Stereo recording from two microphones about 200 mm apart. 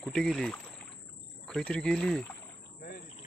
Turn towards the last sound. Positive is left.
turn(degrees=50)  # may be behind; listen again after turning